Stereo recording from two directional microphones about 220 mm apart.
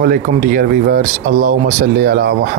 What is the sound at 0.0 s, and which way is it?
Speech, 40° right (ahead or behind).